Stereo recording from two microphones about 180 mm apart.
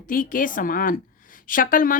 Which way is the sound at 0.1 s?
50° left (ahead or behind).